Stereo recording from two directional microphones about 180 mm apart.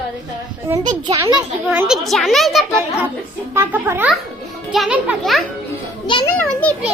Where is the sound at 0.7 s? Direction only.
20° right (ahead or behind).